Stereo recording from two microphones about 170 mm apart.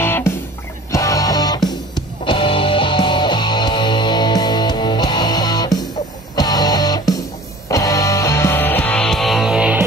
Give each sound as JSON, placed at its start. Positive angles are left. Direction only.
{"t": 0.0, "sound": "music", "side_deg": 10}